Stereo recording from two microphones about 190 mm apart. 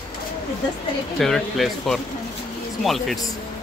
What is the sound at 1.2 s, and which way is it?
Speech, centre (ahead or behind).